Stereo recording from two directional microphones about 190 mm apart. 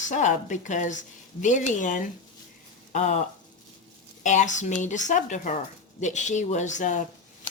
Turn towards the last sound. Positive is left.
turn(degrees=40)  # may be behind; listen again after turning